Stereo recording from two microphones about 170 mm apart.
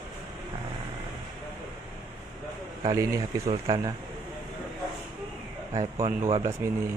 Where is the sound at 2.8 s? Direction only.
20° right (ahead or behind).